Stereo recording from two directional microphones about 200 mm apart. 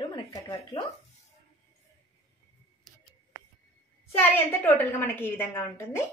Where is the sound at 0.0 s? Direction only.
20° left (ahead or behind).